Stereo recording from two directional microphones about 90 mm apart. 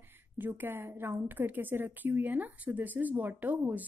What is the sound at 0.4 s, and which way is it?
A woman's voice, 20° right (ahead or behind).